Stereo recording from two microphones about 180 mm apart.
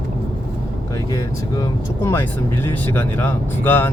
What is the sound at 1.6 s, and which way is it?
Speech, 15° left (ahead or behind).